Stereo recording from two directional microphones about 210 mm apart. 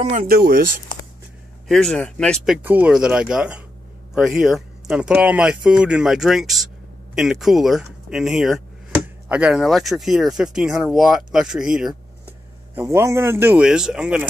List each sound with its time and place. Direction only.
0.0 s speech: 40° right (ahead or behind)
1.7 s speech: 5° left (ahead or behind)